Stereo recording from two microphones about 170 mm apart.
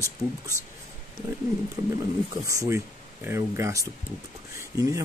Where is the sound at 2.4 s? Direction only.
20° right (ahead or behind).